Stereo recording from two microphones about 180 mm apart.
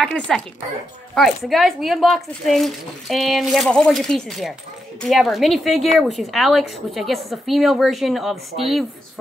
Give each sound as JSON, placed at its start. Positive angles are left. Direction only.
{"t": 0.0, "sound": "speech", "side_deg": 5}